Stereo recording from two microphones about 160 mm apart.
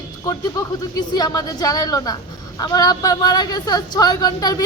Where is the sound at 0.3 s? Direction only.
20° left (ahead or behind).